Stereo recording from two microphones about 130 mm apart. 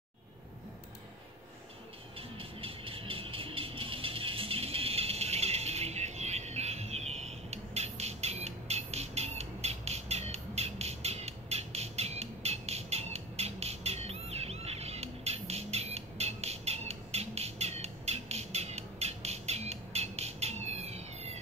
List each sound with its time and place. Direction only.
2.1 s music: 45° right (ahead or behind)